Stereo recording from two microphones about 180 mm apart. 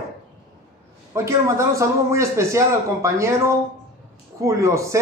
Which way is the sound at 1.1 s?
15° right (ahead or behind).